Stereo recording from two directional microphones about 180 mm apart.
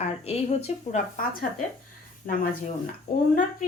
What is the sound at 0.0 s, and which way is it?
Speech, 35° left (ahead or behind).